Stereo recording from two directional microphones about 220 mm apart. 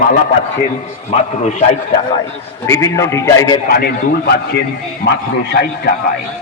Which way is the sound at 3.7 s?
40° left (ahead or behind).